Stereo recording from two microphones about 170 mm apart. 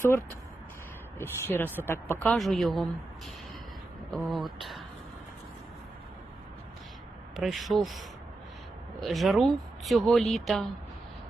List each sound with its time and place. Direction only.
1.2 s speech: 10° left (ahead or behind)
2.2 s speech: centre (ahead or behind)
4.1 s speech: centre (ahead or behind)
7.3 s speech: centre (ahead or behind)